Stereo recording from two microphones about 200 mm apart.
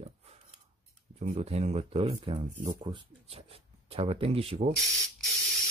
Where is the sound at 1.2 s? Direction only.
30° right (ahead or behind).